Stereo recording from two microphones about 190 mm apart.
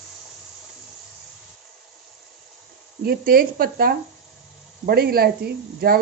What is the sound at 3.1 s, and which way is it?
Speech, 50° right (ahead or behind).